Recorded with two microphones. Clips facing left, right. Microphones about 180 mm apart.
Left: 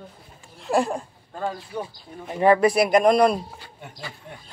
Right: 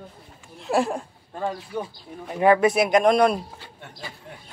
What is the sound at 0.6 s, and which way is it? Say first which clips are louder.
Speech: even; centre (ahead or behind).